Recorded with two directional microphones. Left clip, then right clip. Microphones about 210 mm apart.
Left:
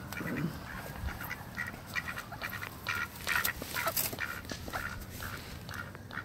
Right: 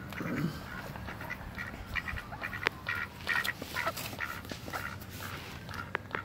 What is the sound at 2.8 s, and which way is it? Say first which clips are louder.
Duck: even; 20° left (ahead or behind).